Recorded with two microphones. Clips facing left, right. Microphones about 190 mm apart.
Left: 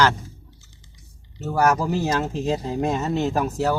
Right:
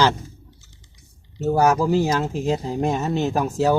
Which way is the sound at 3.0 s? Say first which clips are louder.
Right 1 dB; 20° right (ahead or behind).